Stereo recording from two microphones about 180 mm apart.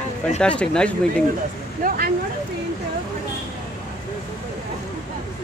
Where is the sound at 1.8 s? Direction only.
50° right (ahead or behind).